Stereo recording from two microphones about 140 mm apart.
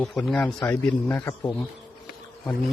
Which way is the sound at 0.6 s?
15° left (ahead or behind).